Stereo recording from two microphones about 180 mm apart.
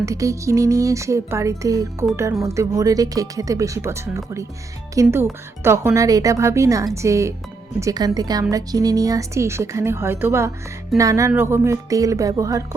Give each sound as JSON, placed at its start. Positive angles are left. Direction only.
{"t": 0.0, "sound": "a woman's voice", "side_deg": -15}